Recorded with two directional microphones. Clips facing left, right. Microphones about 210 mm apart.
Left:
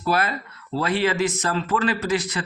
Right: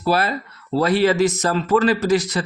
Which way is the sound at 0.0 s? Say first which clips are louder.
Right 3 dB; 35° right (ahead or behind).